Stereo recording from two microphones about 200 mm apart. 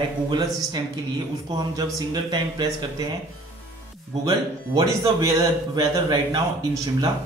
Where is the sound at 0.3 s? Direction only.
20° right (ahead or behind).